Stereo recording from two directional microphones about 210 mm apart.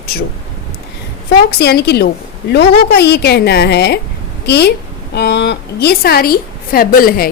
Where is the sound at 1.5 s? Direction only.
50° left (ahead or behind).